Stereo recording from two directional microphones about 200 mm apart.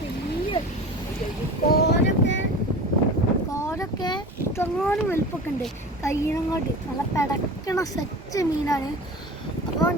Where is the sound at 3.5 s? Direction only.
15° left (ahead or behind).